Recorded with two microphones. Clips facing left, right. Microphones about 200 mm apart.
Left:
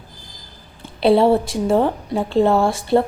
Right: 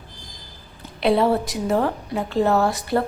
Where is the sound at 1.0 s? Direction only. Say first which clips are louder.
Left 5 dB; 30° left (ahead or behind).